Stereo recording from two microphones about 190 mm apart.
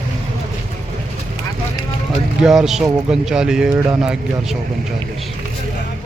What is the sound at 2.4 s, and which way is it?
Speech, 5° right (ahead or behind).